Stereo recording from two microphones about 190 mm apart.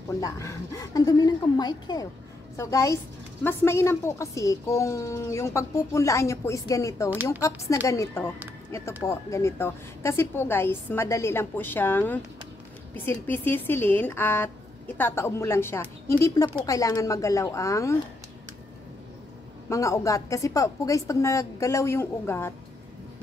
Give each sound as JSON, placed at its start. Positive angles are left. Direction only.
{"t": 0.2, "sound": "a woman's voice", "side_deg": 15}
{"t": 19.7, "sound": "a woman's voice", "side_deg": 15}